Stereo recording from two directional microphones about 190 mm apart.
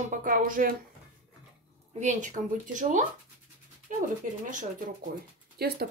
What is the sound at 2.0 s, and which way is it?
Speech, 40° right (ahead or behind).